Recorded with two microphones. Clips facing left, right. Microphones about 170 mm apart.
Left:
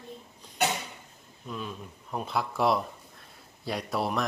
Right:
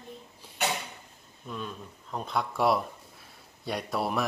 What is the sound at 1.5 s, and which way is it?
Speech, 5° left (ahead or behind).